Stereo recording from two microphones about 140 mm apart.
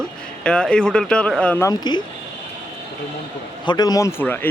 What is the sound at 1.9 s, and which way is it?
Speech, 30° left (ahead or behind).